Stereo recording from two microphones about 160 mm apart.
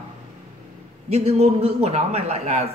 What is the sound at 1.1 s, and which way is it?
A man's voice, 40° right (ahead or behind).